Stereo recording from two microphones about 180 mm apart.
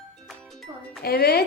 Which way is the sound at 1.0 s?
60° left (ahead or behind).